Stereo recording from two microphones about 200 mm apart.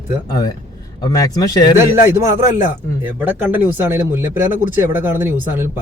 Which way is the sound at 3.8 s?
10° right (ahead or behind).